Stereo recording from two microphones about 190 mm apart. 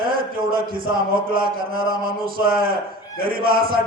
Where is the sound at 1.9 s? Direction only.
50° right (ahead or behind).